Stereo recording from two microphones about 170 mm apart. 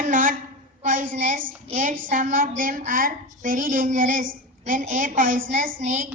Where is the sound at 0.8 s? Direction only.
50° right (ahead or behind).